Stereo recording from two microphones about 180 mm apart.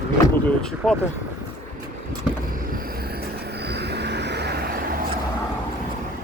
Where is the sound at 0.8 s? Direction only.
5° right (ahead or behind).